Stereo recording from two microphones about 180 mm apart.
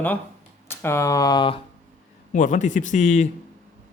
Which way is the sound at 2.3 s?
45° left (ahead or behind).